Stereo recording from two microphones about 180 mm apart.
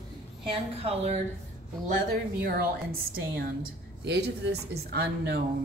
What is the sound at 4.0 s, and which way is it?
Speech, 65° right (ahead or behind).